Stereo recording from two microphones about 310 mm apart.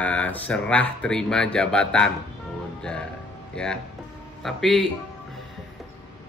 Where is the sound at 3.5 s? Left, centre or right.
Centre.